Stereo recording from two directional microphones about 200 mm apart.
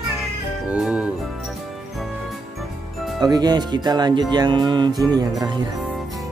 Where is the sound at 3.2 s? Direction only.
20° right (ahead or behind).